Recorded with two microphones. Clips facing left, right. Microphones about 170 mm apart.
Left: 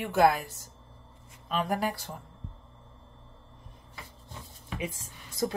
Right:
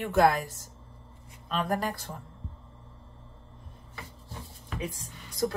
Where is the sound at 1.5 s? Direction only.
10° left (ahead or behind).